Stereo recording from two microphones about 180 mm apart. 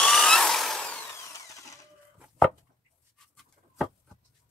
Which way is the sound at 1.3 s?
20° left (ahead or behind).